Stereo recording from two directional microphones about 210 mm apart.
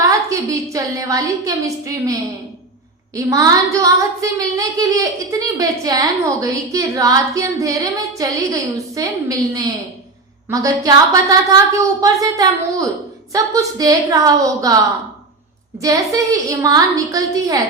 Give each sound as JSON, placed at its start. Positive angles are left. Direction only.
{"t": 0.0, "sound": "speech", "side_deg": -15}
{"t": 3.2, "sound": "speech", "side_deg": -15}
{"t": 15.8, "sound": "speech", "side_deg": -15}